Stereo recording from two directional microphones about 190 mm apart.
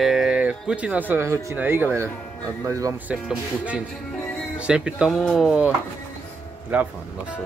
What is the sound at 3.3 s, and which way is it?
Speech, 5° right (ahead or behind).